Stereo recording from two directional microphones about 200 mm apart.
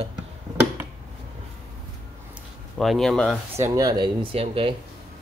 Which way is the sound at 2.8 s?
Centre (ahead or behind).